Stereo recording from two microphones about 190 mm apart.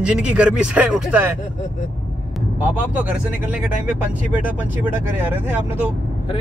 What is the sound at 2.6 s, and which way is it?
Speech, 10° right (ahead or behind).